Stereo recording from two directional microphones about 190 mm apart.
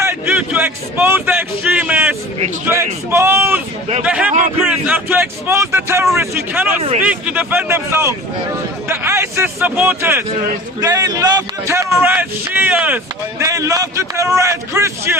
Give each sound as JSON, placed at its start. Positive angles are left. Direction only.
{"t": 0.0, "sound": "speech", "side_deg": -10}
{"t": 6.7, "sound": "speech", "side_deg": -35}
{"t": 7.0, "sound": "a man's voice", "side_deg": -5}